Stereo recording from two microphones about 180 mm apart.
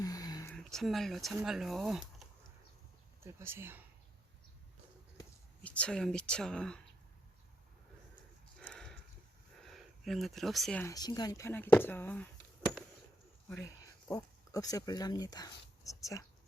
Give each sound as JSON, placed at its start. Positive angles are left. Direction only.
{"t": 0.0, "sound": "a sound", "side_deg": 20}
{"t": 0.5, "sound": "speech", "side_deg": 0}
{"t": 3.3, "sound": "speech", "side_deg": -15}
{"t": 5.6, "sound": "speech", "side_deg": 5}
{"t": 8.5, "sound": "livestock", "side_deg": 5}
{"t": 9.6, "sound": "speech", "side_deg": 0}
{"t": 10.8, "sound": "speech", "side_deg": 20}
{"t": 13.5, "sound": "speech", "side_deg": 15}